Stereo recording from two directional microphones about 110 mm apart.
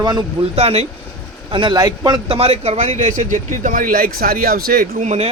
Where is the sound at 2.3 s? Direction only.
65° right (ahead or behind).